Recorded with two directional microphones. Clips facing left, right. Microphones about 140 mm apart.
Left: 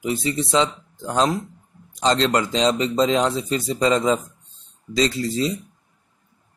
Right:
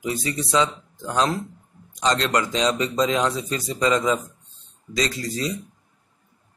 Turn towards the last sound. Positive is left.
turn(degrees=30)  # may be behind; listen again after turning